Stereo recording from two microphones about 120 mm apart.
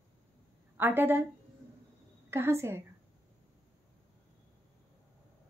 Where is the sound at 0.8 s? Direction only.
15° right (ahead or behind).